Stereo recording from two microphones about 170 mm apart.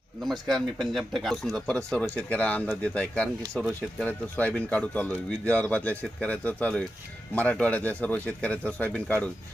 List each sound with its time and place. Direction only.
0.2 s speech: centre (ahead or behind)